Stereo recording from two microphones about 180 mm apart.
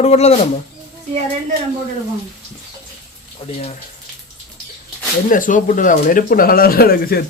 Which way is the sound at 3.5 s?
35° left (ahead or behind).